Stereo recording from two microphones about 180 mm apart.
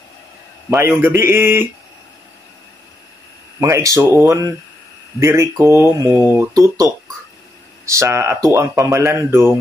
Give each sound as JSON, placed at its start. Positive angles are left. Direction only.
{"t": 0.7, "sound": "speech", "side_deg": -15}
{"t": 3.6, "sound": "speech", "side_deg": -15}